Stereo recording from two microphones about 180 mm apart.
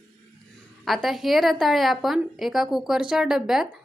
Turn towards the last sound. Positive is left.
turn(degrees=0)  # may be behind; listen again after turning